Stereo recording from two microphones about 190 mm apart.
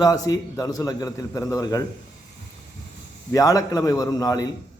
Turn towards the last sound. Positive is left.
turn(degrees=20)  # may be behind; listen again after turning